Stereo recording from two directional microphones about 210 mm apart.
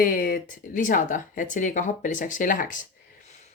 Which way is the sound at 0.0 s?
40° left (ahead or behind).